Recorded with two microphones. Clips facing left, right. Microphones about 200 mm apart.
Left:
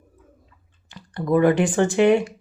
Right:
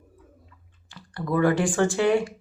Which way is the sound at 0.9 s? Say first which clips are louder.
Left 6 dB; 20° left (ahead or behind).